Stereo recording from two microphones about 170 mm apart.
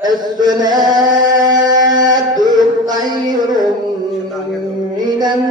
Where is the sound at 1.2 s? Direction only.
25° right (ahead or behind).